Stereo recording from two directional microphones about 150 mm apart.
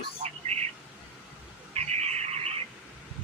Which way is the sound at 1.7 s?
45° right (ahead or behind).